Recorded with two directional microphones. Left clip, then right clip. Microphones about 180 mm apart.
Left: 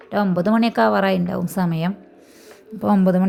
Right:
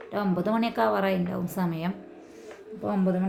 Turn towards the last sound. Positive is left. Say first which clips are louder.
# left 9 dB
turn(degrees=50)  # may be behind; listen again after turning